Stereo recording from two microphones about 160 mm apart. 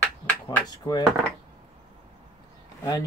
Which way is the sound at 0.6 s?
25° left (ahead or behind).